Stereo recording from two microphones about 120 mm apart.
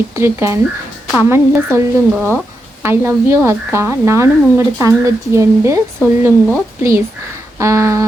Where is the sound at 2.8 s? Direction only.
20° right (ahead or behind).